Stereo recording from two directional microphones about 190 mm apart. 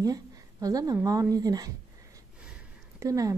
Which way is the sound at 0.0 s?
20° right (ahead or behind).